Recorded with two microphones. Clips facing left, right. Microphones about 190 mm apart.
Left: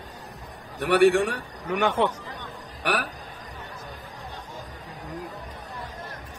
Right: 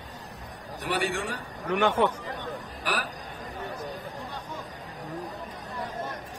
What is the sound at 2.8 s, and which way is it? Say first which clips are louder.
Speech: left 5 dB; 65° left (ahead or behind).